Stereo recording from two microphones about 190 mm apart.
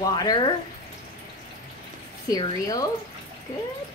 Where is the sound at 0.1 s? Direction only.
20° left (ahead or behind).